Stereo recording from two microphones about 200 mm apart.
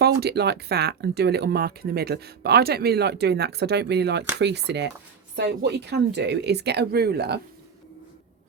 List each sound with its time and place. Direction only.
0.0 s speech: 55° right (ahead or behind)